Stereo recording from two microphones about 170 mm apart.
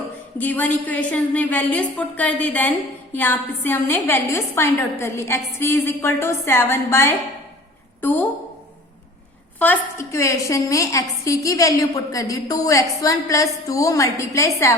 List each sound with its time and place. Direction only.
0.3 s a woman's voice: 10° left (ahead or behind)
9.6 s a woman's voice: 15° left (ahead or behind)